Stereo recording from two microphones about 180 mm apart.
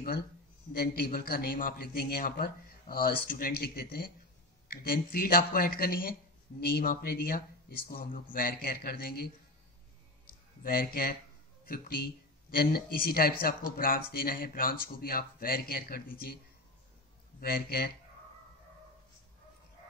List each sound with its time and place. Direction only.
0.7 s a man's voice: 55° left (ahead or behind)
10.6 s a man's voice: 55° left (ahead or behind)
17.4 s a man's voice: 55° left (ahead or behind)